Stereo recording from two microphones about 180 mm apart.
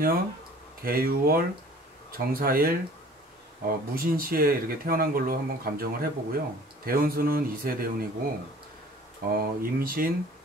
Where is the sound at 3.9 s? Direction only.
55° right (ahead or behind).